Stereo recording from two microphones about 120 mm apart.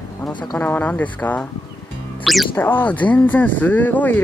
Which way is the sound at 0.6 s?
10° left (ahead or behind).